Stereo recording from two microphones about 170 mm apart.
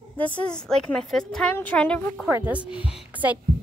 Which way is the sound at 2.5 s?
10° right (ahead or behind).